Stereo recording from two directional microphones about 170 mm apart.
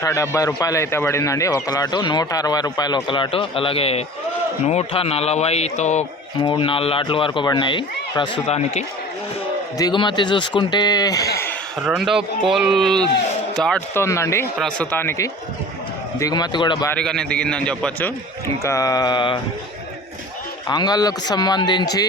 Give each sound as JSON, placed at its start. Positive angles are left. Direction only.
{"t": 0.0, "sound": "a man's voice", "side_deg": 20}
{"t": 6.4, "sound": "a man's voice", "side_deg": 30}
{"t": 8.4, "sound": "a man's voice", "side_deg": 40}
{"t": 9.7, "sound": "a man's voice", "side_deg": 25}
{"t": 11.8, "sound": "speech", "side_deg": -5}
{"t": 13.9, "sound": "a man's voice", "side_deg": 15}
{"t": 16.9, "sound": "a man's voice", "side_deg": 5}
{"t": 18.6, "sound": "a man's voice", "side_deg": 20}
{"t": 20.7, "sound": "a man's voice", "side_deg": 25}